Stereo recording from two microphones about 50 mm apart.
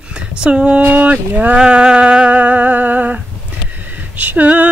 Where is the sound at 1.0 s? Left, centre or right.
Right.